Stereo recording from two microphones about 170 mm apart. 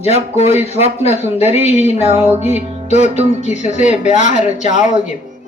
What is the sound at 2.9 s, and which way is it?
Speech, 40° left (ahead or behind).